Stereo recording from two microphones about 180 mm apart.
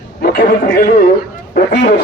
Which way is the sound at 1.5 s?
55° left (ahead or behind).